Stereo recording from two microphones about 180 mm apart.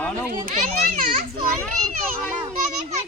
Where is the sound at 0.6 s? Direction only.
50° right (ahead or behind).